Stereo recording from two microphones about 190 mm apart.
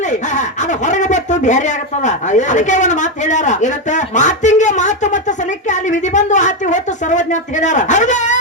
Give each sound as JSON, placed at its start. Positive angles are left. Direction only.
{"t": 0.3, "sound": "speech", "side_deg": 40}